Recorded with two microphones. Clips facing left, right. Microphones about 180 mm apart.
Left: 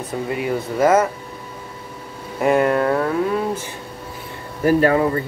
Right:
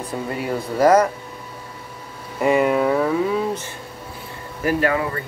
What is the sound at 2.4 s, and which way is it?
Speech, centre (ahead or behind).